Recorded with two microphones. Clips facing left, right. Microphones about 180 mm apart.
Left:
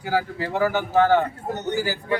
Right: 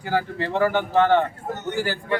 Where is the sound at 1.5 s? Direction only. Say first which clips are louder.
Left 2 dB; 20° left (ahead or behind).